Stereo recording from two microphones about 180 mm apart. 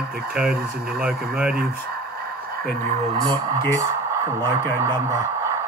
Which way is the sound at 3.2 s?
20° right (ahead or behind).